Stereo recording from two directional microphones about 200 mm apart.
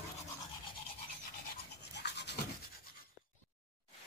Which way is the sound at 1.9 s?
55° left (ahead or behind).